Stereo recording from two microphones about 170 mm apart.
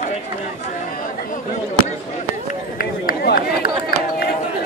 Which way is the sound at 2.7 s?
60° left (ahead or behind).